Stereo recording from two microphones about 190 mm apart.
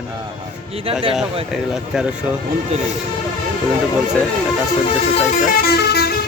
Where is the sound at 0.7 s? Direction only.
30° right (ahead or behind).